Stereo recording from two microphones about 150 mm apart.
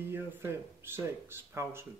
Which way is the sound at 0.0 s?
15° right (ahead or behind).